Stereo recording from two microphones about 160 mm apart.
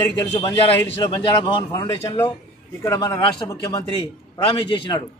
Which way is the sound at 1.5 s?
20° left (ahead or behind).